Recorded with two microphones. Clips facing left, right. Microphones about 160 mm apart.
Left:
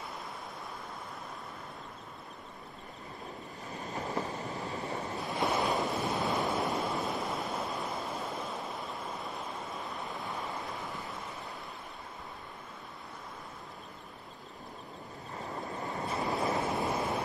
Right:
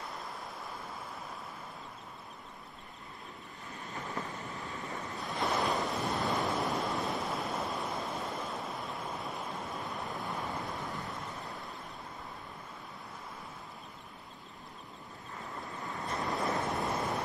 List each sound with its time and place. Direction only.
3.8 s vehicle: 40° left (ahead or behind)
4.2 s train: 40° left (ahead or behind)
4.6 s vehicle: 40° left (ahead or behind)
5.2 s waves: centre (ahead or behind)
15.8 s waves: 20° left (ahead or behind)
16.1 s waves: centre (ahead or behind)